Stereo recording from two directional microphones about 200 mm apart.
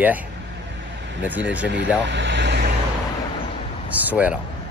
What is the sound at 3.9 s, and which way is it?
Speech, 5° right (ahead or behind).